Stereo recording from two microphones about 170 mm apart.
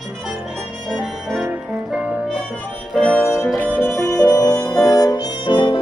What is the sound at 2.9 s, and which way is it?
Music, 5° left (ahead or behind).